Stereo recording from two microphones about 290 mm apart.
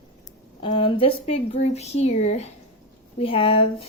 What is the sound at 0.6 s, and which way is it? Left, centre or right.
Speech, centre.